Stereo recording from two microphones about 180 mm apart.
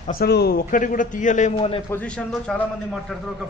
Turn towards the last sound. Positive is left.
turn(degrees=5)  # may be behind; listen again after turning